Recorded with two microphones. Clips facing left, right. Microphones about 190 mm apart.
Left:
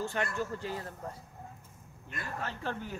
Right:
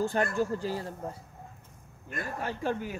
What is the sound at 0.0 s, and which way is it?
Speech, 35° right (ahead or behind).